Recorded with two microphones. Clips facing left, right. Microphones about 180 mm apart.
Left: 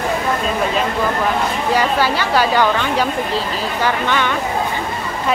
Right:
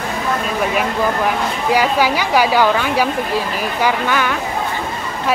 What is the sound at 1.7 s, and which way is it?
Speech, 10° right (ahead or behind).